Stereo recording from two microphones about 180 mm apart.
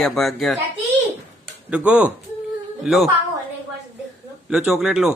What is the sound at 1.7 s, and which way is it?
Speech, 10° right (ahead or behind).